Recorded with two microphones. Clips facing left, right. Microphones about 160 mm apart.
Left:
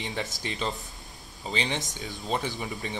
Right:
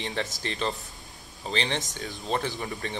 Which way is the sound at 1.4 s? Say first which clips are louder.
Right 1 dB; 15° left (ahead or behind).